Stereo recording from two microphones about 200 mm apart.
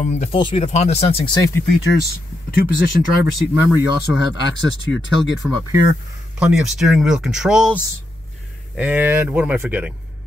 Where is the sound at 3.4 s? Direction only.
10° right (ahead or behind).